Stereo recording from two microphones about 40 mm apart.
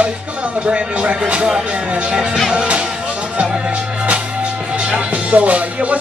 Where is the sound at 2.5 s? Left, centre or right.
Right.